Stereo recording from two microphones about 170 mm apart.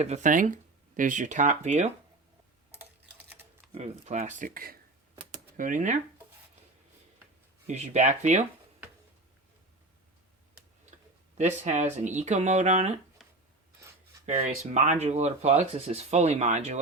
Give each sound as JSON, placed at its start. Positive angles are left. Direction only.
{"t": 0.0, "sound": "speech", "side_deg": -45}
{"t": 2.7, "sound": "typing", "side_deg": -10}
{"t": 3.8, "sound": "speech", "side_deg": -40}
{"t": 7.7, "sound": "speech", "side_deg": -45}
{"t": 10.9, "sound": "speech", "side_deg": -45}
{"t": 13.2, "sound": "a sound", "side_deg": 0}
{"t": 14.3, "sound": "speech", "side_deg": -45}